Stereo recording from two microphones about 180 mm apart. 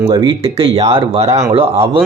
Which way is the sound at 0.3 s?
30° right (ahead or behind).